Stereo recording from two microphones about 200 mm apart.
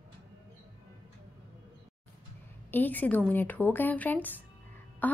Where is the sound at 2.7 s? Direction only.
10° left (ahead or behind).